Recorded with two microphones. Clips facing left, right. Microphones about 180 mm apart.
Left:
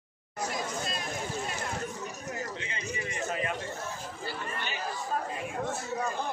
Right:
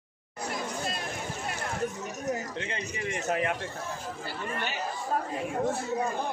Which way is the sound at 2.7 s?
65° right (ahead or behind).